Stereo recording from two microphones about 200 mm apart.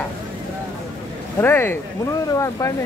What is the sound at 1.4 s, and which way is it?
Speech, 10° left (ahead or behind).